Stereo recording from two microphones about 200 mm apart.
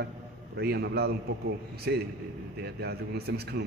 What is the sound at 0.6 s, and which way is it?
A man's voice, 55° right (ahead or behind).